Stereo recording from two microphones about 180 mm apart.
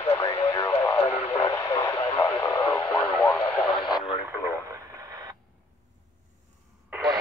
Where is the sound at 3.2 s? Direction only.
30° left (ahead or behind).